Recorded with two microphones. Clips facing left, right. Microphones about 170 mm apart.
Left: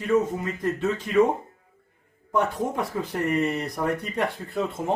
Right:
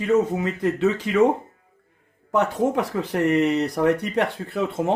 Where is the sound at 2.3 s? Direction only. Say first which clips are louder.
Right 4 dB; 80° right.